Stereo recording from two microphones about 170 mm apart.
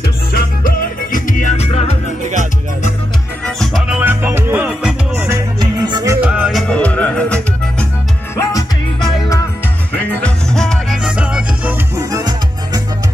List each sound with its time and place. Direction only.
0.3 s music: 60° left (ahead or behind); by 1.9 s 40° left (ahead or behind)
3.4 s music: centre (ahead or behind)
5.6 s music: 25° right (ahead or behind)
6.2 s music: 5° right (ahead or behind)
6.7 s music: 10° left (ahead or behind)
8.4 s music: 20° left (ahead or behind)
9.9 s music: 10° left (ahead or behind)
12.0 s music: 20° right (ahead or behind)